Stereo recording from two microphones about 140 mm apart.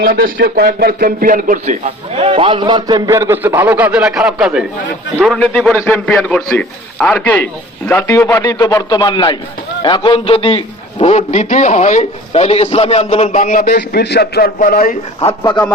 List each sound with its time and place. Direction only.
0.0 s a man's voice: 90° right; by 13.7 s 65° left (ahead or behind)
14.3 s a man's voice: 90° left